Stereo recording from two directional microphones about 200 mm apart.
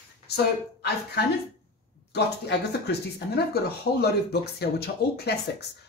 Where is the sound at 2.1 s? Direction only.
55° left (ahead or behind).